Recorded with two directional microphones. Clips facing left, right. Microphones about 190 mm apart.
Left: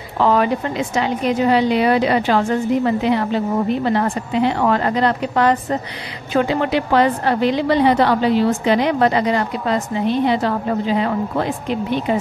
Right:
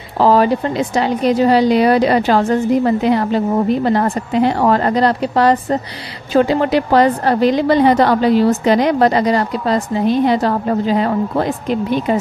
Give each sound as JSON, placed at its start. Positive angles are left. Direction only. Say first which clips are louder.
{"t": 0.2, "sound": "a woman's voice", "louder": "right 4 dB", "side_deg": -35}